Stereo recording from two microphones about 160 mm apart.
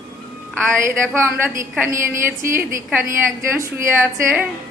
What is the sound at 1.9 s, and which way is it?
A woman's voice, 15° right (ahead or behind).